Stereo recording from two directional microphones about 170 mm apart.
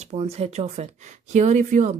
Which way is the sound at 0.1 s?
35° right (ahead or behind).